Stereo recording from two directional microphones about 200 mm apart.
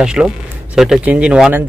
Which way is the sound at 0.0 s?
5° right (ahead or behind).